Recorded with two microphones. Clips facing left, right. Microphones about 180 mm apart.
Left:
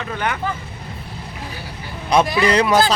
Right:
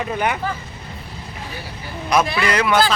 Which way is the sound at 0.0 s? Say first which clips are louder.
Right 2 dB; 15° right (ahead or behind).